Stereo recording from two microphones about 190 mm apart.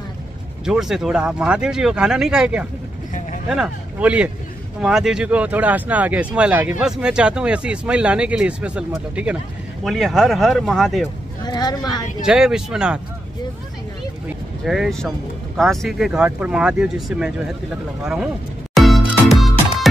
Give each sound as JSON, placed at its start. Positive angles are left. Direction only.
{"t": 0.7, "sound": "speech", "side_deg": 0}
{"t": 11.4, "sound": "speech", "side_deg": 20}
{"t": 12.3, "sound": "speech", "side_deg": -5}
{"t": 14.6, "sound": "speech", "side_deg": 0}
{"t": 18.8, "sound": "music", "side_deg": 0}